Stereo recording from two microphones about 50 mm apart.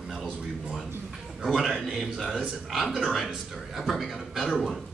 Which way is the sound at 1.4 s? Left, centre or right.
Centre.